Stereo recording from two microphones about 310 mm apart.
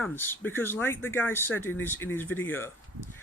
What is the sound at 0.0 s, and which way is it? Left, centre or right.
Speech, centre.